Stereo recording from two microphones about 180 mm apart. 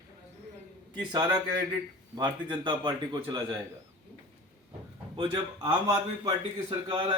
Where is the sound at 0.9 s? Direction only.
25° right (ahead or behind).